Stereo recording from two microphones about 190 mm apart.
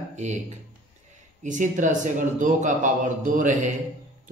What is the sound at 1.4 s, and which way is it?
Speech, 40° right (ahead or behind).